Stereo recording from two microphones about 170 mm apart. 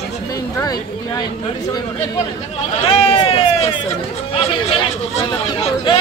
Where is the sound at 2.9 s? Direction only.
35° left (ahead or behind).